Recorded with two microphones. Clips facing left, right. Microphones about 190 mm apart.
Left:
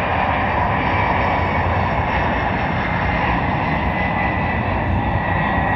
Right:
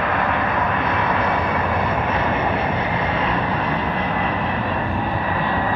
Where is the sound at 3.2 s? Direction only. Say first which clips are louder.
Left 1 dB; 15° left (ahead or behind).